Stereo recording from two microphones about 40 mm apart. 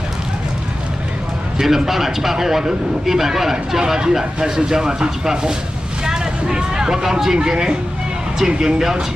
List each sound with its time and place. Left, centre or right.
1.6 s speech: centre
6.0 s vehicle: centre
7.3 s speech: right